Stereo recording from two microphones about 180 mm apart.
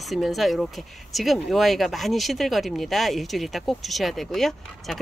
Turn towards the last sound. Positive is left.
turn(degrees=0)  # may be behind; listen again after turning